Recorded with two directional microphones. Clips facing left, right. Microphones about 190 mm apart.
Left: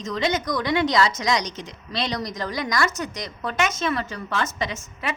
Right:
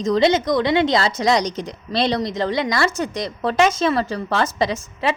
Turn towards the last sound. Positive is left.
turn(degrees=-35)  # may be behind; listen again after turning